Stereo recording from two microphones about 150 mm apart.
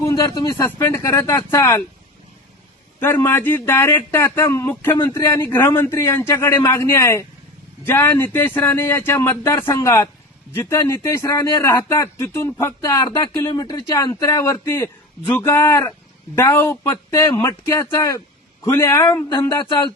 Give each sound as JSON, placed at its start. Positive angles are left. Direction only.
{"t": 0.1, "sound": "speech", "side_deg": 25}
{"t": 3.0, "sound": "speech", "side_deg": 15}
{"t": 19.3, "sound": "speech", "side_deg": 30}